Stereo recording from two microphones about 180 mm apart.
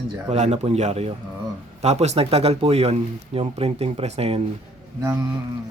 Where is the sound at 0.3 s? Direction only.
35° right (ahead or behind).